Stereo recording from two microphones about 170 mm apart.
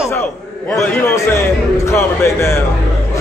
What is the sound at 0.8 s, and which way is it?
A man's voice, 15° left (ahead or behind).